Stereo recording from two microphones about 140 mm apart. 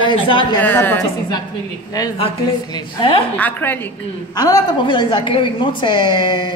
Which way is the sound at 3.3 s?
15° left (ahead or behind).